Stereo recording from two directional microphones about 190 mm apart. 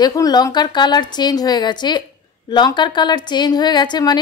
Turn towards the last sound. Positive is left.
turn(degrees=20)  # may be behind; listen again after turning